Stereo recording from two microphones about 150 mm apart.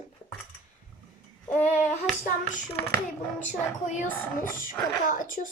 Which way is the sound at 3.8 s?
55° left (ahead or behind).